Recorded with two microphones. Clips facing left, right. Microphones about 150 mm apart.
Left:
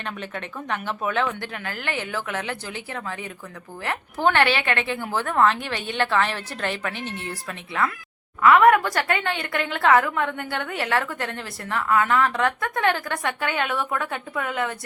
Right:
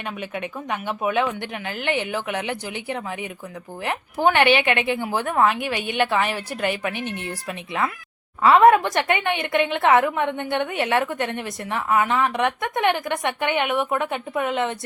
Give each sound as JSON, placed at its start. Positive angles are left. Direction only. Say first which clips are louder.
{"t": 0.0, "sound": "a woman's voice", "louder": "right 3 dB", "side_deg": -10}
{"t": 8.4, "sound": "a woman's voice", "louder": "right 1 dB", "side_deg": -30}